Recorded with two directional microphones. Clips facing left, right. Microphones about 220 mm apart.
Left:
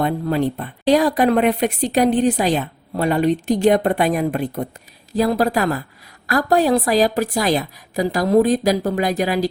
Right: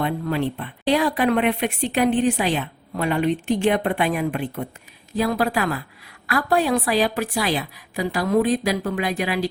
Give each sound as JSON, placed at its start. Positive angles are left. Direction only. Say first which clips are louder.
{"t": 0.0, "sound": "speech", "louder": "left 4 dB", "side_deg": 40}